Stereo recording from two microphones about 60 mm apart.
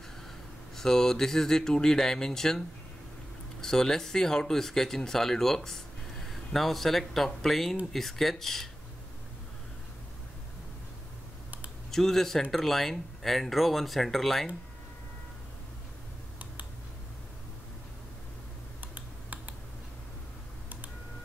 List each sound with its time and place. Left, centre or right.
0.7 s speech: centre
3.6 s speech: centre
11.9 s speech: centre
18.8 s computer keyboard: right